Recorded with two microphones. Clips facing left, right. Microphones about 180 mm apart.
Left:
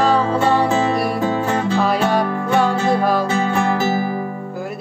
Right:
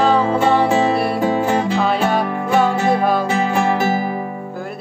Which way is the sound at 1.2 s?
15° right (ahead or behind).